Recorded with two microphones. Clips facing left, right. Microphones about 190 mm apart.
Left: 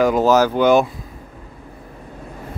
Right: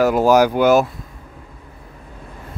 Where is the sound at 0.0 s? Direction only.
10° right (ahead or behind).